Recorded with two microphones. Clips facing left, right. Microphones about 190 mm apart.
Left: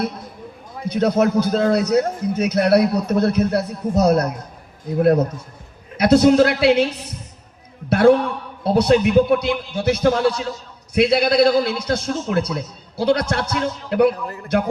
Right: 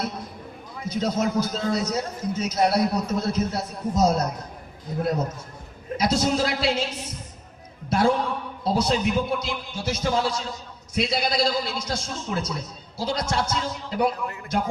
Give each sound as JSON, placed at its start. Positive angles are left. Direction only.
{"t": 0.9, "sound": "a man's voice", "side_deg": 60}
{"t": 6.0, "sound": "a man's voice", "side_deg": 60}
{"t": 7.9, "sound": "a man's voice", "side_deg": 60}